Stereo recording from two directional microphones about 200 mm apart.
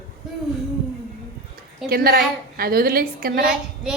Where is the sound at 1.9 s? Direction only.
50° right (ahead or behind).